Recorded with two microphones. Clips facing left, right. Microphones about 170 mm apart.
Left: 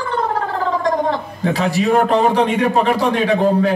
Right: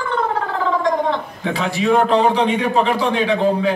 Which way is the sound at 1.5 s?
40° left (ahead or behind).